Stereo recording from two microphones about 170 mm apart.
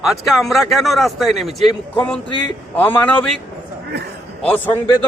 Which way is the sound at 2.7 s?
10° left (ahead or behind).